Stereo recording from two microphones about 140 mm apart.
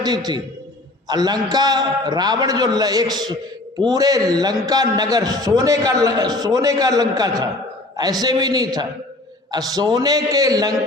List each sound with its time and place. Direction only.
0.0 s a man's voice: 30° right (ahead or behind)